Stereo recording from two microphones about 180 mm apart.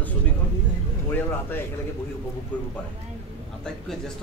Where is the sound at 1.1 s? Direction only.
10° left (ahead or behind).